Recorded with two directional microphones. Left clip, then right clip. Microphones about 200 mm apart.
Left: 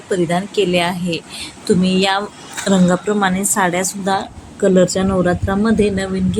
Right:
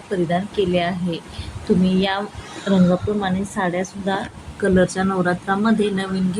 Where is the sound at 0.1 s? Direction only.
15° left (ahead or behind).